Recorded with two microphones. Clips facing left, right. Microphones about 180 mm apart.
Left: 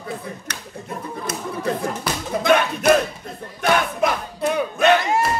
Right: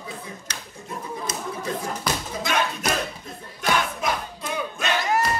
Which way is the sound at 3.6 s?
60° left (ahead or behind).